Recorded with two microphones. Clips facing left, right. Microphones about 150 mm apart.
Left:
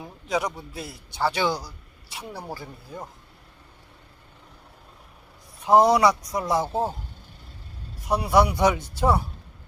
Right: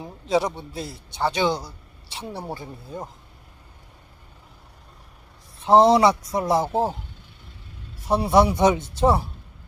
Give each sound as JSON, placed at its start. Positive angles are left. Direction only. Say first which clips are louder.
{"t": 0.0, "sound": "a man's voice", "louder": "right 4 dB", "side_deg": -25}
{"t": 5.6, "sound": "a man's voice", "louder": "right 2 dB", "side_deg": -25}
{"t": 8.0, "sound": "a man's voice", "louder": "right 2 dB", "side_deg": -25}